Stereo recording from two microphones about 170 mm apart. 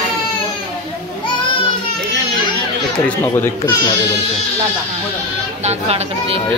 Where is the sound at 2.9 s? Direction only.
10° left (ahead or behind).